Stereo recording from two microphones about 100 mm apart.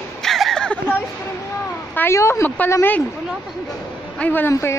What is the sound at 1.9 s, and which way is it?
A woman's voice, 25° left (ahead or behind).